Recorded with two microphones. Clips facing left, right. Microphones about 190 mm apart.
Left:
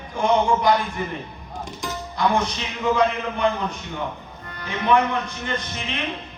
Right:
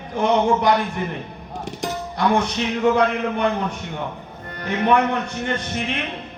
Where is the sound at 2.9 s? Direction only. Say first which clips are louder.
Right 2 dB; 60° right (ahead or behind).